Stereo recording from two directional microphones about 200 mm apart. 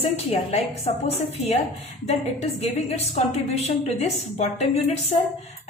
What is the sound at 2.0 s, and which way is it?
A woman's voice, 35° left (ahead or behind).